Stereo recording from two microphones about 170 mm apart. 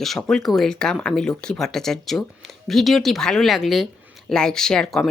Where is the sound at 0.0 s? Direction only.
Centre (ahead or behind).